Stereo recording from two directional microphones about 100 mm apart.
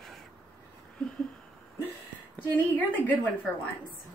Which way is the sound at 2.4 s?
15° left (ahead or behind).